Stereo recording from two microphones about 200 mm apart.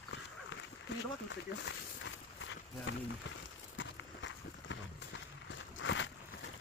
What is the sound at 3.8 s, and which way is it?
Run, 70° left (ahead or behind).